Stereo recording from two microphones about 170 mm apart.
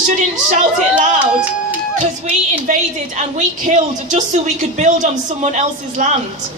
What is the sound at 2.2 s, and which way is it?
A woman's voice, 45° right (ahead or behind).